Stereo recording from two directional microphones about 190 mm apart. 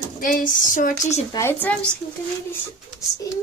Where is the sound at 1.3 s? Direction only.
10° left (ahead or behind).